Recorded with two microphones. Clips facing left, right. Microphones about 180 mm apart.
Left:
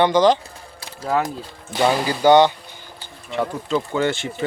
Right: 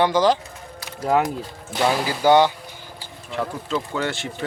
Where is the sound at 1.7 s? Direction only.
Centre (ahead or behind).